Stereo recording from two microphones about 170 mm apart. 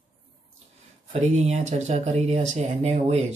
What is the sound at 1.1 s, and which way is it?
Speech, 40° right (ahead or behind).